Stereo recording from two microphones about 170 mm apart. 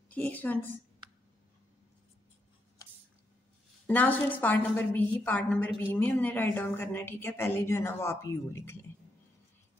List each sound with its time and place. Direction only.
0.1 s a woman's voice: 10° left (ahead or behind)
3.8 s a woman's voice: 10° left (ahead or behind)